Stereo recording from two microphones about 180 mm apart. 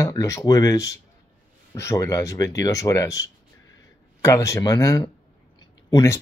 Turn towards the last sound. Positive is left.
turn(degrees=20)  # may be behind; listen again after turning